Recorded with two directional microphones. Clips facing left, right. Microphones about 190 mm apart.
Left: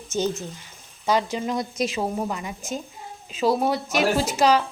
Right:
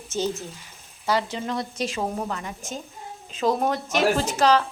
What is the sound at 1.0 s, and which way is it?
A woman's voice, 15° left (ahead or behind).